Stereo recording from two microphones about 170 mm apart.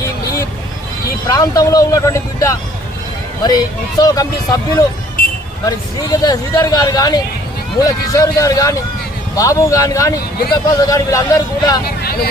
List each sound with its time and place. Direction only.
1.3 s a man's voice: 20° left (ahead or behind)